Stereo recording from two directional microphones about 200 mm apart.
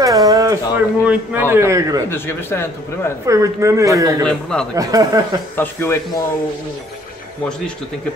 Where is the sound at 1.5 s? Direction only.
15° right (ahead or behind).